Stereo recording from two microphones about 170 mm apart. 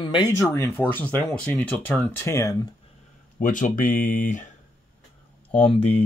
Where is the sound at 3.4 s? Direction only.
50° left (ahead or behind).